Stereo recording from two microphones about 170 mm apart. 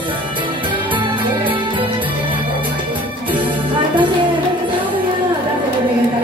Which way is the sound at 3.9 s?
30° right (ahead or behind).